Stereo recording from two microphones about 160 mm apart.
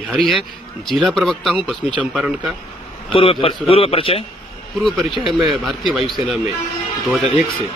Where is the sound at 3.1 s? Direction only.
35° left (ahead or behind).